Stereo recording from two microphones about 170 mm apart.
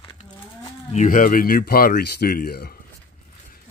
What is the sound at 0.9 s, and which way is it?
Speech, 50° left (ahead or behind).